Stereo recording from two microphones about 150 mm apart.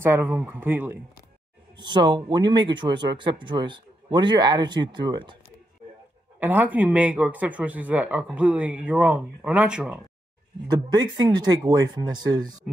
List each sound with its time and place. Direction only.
0.0 s speech: 15° right (ahead or behind)
1.8 s speech: 30° right (ahead or behind)
6.4 s speech: 10° right (ahead or behind)
10.7 s speech: 30° right (ahead or behind)